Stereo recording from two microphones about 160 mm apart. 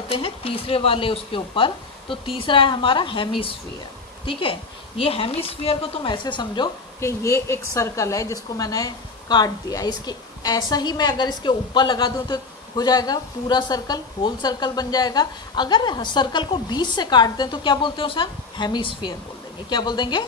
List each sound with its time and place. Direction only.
0.1 s speech: 35° left (ahead or behind)
4.3 s speech: 35° left (ahead or behind)
7.0 s a woman's voice: 20° left (ahead or behind)